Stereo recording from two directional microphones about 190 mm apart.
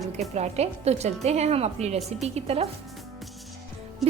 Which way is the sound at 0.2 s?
35° right (ahead or behind).